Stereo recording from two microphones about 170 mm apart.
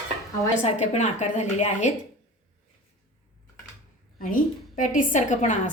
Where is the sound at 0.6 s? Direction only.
40° left (ahead or behind).